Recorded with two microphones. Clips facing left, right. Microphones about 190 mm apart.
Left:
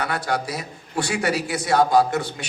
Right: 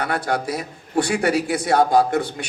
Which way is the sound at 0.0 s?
55° right (ahead or behind).